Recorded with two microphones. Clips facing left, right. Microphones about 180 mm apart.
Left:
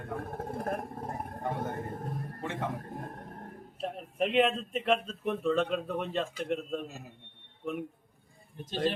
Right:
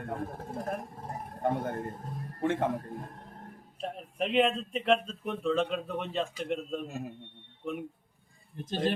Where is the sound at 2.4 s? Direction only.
55° right (ahead or behind).